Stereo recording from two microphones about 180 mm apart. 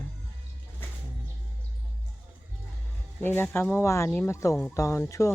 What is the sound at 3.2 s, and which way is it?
Speech, 10° left (ahead or behind).